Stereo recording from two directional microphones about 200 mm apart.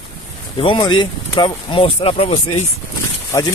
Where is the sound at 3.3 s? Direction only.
15° left (ahead or behind).